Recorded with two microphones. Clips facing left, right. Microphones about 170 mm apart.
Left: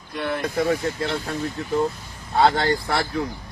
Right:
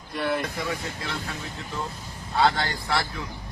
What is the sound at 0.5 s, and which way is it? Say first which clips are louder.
Speech: left 9 dB; 55° left (ahead or behind).